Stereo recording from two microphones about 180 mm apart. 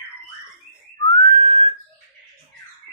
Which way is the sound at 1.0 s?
35° left (ahead or behind).